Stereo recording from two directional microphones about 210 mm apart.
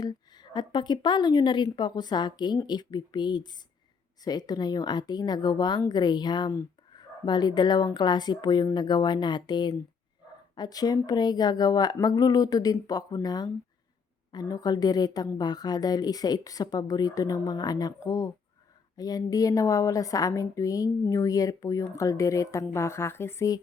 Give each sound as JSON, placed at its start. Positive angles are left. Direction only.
{"t": 0.0, "sound": "a woman's voice", "side_deg": 20}